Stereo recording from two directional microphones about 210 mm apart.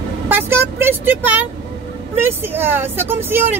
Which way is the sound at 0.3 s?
10° right (ahead or behind).